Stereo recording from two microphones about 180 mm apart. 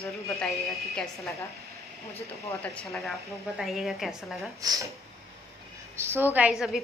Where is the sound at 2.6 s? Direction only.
5° left (ahead or behind).